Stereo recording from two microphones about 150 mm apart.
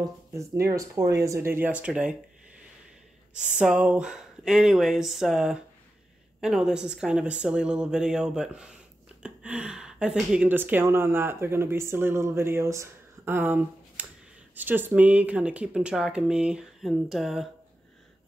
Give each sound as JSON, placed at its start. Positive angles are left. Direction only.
{"t": 0.0, "sound": "speech", "side_deg": -20}
{"t": 3.3, "sound": "speech", "side_deg": -5}